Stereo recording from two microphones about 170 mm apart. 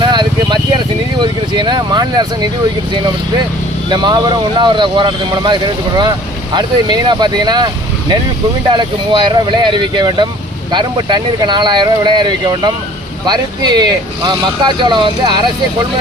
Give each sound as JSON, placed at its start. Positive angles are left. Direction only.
{"t": 0.0, "sound": "vehicle", "side_deg": -25}
{"t": 3.9, "sound": "speech", "side_deg": -25}